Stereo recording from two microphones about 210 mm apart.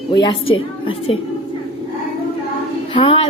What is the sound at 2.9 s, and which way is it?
Music, 25° left (ahead or behind).